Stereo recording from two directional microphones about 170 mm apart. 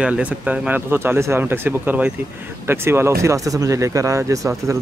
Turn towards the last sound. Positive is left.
turn(degrees=-20)  # may be behind; listen again after turning